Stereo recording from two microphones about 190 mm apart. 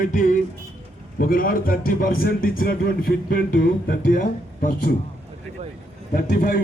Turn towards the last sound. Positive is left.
turn(degrees=50)  # may be behind; listen again after turning